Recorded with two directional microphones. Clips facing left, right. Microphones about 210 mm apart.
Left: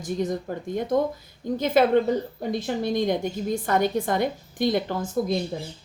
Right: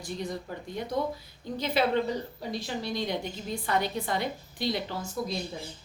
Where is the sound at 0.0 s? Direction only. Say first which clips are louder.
Left 8 dB; 45° left (ahead or behind).